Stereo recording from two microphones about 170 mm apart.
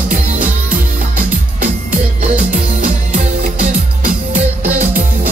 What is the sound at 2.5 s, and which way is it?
Music, 50° right (ahead or behind).